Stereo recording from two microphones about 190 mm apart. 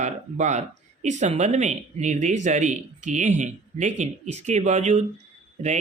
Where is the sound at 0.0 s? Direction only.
40° right (ahead or behind).